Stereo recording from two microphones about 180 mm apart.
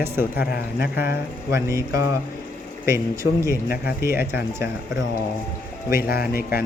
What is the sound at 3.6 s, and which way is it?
Speech, 60° left (ahead or behind).